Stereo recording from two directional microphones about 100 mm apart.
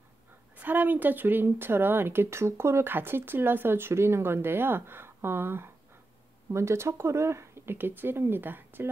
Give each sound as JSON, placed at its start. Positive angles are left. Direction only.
{"t": 0.6, "sound": "speech", "side_deg": -20}